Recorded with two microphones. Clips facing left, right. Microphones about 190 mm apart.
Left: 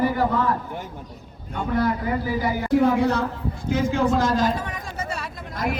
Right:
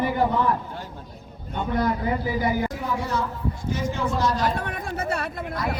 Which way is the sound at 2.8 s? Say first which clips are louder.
Left 8 dB; 65° left (ahead or behind).